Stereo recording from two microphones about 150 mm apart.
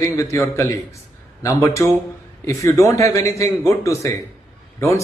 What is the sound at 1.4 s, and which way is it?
A man's voice, 20° left (ahead or behind).